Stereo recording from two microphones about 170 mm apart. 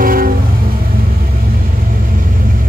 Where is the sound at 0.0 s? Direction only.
55° right (ahead or behind).